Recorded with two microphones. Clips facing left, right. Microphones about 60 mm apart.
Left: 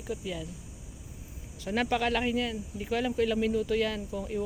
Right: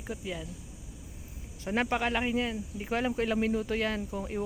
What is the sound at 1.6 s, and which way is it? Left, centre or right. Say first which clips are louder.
Speech: left 1 dB; right.